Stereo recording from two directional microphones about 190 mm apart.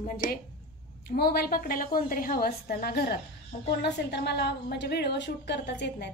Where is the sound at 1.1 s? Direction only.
55° left (ahead or behind).